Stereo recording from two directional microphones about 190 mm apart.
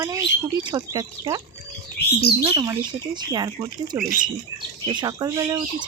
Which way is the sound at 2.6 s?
20° right (ahead or behind).